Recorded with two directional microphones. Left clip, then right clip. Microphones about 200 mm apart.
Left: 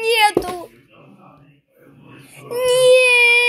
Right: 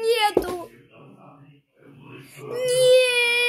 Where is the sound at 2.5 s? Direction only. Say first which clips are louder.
Left 5 dB; 15° left (ahead or behind).